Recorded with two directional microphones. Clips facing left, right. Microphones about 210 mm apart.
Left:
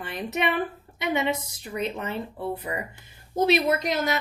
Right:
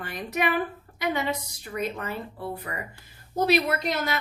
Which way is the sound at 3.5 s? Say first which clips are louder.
Left 1 dB; 20° left (ahead or behind).